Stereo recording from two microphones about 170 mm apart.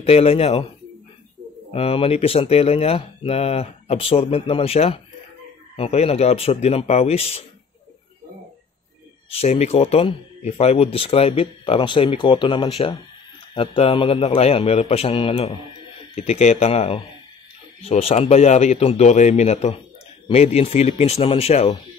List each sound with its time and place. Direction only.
0.0 s speech: 35° left (ahead or behind)
1.7 s speech: 35° left (ahead or behind)
9.3 s speech: 35° left (ahead or behind)